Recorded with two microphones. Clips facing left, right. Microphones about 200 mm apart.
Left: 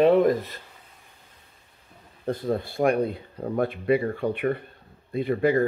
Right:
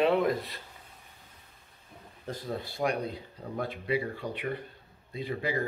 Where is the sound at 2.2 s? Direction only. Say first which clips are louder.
Left 9 dB; 55° left (ahead or behind).